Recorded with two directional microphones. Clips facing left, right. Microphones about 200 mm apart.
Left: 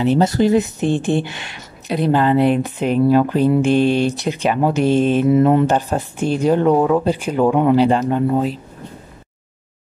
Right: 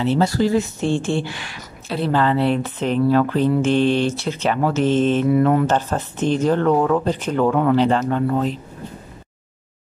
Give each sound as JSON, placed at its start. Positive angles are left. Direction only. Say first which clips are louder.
{"t": 0.0, "sound": "speech", "louder": "left 3 dB", "side_deg": 20}
{"t": 5.3, "sound": "speech", "louder": "left 3 dB", "side_deg": 25}
{"t": 5.7, "sound": "speech", "louder": "left 2 dB", "side_deg": 15}